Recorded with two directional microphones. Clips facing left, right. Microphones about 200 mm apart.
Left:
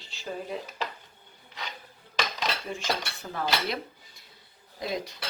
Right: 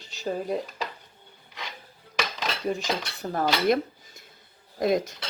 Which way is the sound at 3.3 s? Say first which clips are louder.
Right 7 dB; 45° right (ahead or behind).